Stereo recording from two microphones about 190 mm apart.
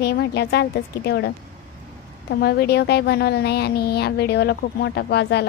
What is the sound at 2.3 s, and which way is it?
A woman's voice, 55° left (ahead or behind).